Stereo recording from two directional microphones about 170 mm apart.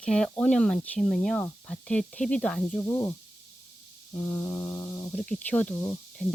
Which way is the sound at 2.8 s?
20° left (ahead or behind).